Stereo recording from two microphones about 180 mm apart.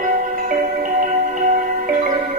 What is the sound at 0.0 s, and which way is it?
Marimba, 50° right (ahead or behind).